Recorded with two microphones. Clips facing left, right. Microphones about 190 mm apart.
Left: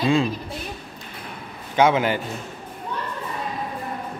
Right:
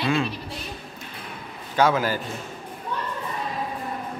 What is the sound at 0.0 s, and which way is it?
Speech, 30° left (ahead or behind).